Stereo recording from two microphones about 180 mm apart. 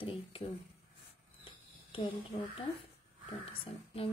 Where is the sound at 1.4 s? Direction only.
30° left (ahead or behind).